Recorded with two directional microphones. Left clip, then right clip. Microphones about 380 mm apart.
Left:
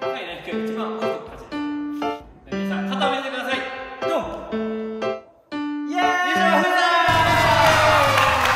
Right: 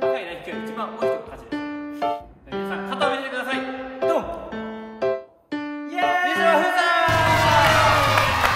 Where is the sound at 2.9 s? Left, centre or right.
Centre.